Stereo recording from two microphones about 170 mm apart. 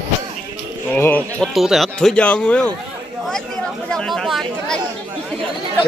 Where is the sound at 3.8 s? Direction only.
5° left (ahead or behind).